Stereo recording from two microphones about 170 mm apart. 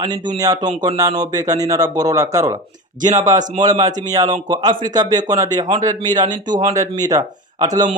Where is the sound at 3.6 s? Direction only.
20° right (ahead or behind).